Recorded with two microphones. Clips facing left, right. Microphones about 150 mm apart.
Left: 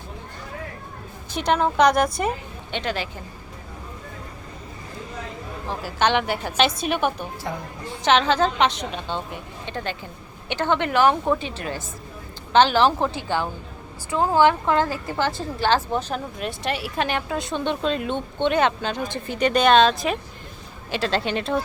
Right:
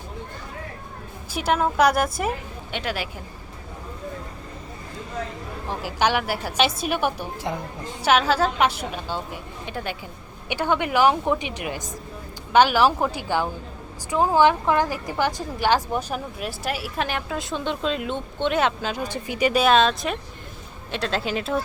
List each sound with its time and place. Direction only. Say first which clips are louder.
1.3 s a woman's voice: left 1 dB; 5° right (ahead or behind)
5.8 s a woman's voice: left 1 dB; 10° right (ahead or behind)
7.5 s a woman's voice: right 2 dB; 20° right (ahead or behind)
8.0 s a woman's voice: left 1 dB; 5° right (ahead or behind)